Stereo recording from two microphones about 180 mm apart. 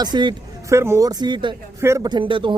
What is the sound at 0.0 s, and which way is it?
Speech, 25° right (ahead or behind).